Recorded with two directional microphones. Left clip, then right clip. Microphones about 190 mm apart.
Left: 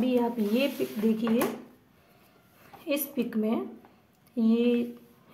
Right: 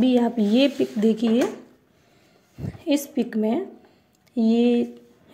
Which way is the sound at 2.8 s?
20° right (ahead or behind).